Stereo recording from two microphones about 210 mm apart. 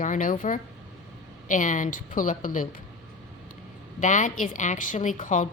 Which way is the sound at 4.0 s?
35° left (ahead or behind).